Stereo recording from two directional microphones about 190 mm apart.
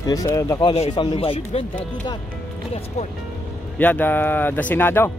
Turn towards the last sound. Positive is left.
turn(degrees=10)  # may be behind; listen again after turning